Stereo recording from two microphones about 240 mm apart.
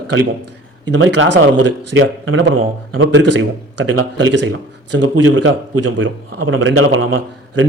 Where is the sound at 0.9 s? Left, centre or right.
Right.